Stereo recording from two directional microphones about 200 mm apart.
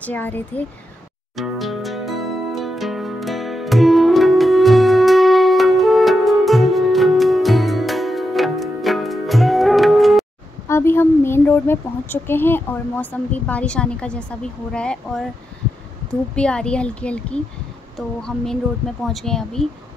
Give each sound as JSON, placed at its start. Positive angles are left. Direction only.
{"t": 0.0, "sound": "speech", "side_deg": 10}
{"t": 1.3, "sound": "music", "side_deg": 0}
{"t": 10.7, "sound": "speech", "side_deg": 10}
{"t": 16.3, "sound": "a woman's voice", "side_deg": 5}